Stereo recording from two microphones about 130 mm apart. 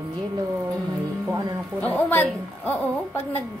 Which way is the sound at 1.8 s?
15° left (ahead or behind).